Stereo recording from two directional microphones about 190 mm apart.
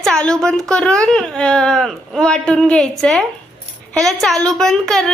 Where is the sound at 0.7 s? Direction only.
5° left (ahead or behind).